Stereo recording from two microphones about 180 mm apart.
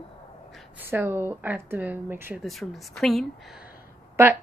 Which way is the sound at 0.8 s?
10° right (ahead or behind).